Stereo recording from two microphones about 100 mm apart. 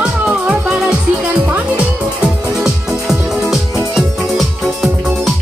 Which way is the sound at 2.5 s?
5° right (ahead or behind).